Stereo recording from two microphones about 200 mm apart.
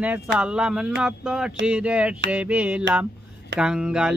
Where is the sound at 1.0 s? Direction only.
5° right (ahead or behind).